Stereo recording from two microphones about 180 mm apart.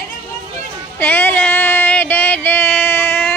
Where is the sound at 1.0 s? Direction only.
10° left (ahead or behind).